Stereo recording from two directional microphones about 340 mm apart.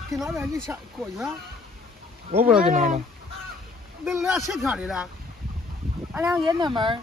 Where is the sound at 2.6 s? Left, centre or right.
Right.